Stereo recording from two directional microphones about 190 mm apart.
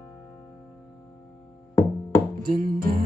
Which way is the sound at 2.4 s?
50° right (ahead or behind).